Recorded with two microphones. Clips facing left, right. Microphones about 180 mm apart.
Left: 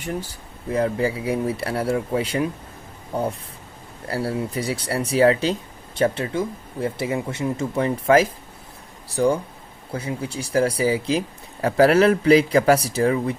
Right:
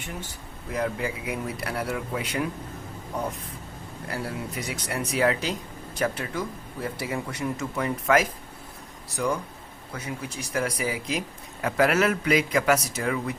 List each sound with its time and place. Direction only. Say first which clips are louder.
0.7 s speech: left 7 dB; 30° left (ahead or behind)